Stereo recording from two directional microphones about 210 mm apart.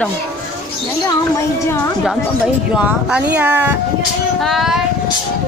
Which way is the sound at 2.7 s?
5° right (ahead or behind).